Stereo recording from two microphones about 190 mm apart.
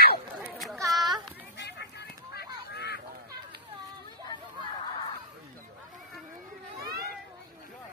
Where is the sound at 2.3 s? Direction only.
60° left (ahead or behind).